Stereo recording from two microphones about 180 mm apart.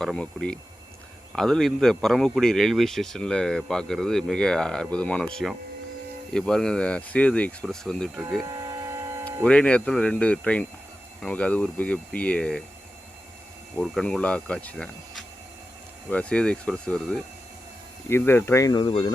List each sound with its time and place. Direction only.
0.0 s a man's voice: centre (ahead or behind)
8.5 s hum: 20° right (ahead or behind)
9.4 s a man's voice: 5° left (ahead or behind)
13.7 s a man's voice: centre (ahead or behind)
18.1 s speech: 15° left (ahead or behind)